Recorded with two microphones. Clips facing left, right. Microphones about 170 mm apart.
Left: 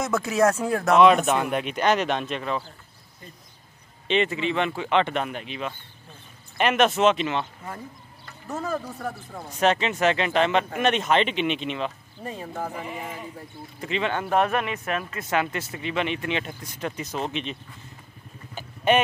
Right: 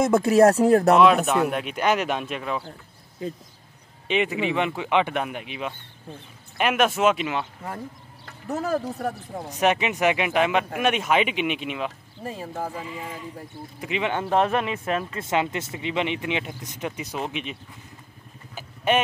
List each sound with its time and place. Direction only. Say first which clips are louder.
0.3 s speech: right 6 dB; 35° right (ahead or behind)
0.9 s speech: even; centre (ahead or behind)
3.2 s speech: right 16 dB; 90° right
4.1 s speech: even; 10° right (ahead or behind)
8.5 s speech: right 4 dB; 35° right (ahead or behind)
9.5 s speech: even; 15° right (ahead or behind)
13.7 s speech: even; 10° right (ahead or behind)
18.5 s a sound: left 2 dB; 5° right (ahead or behind)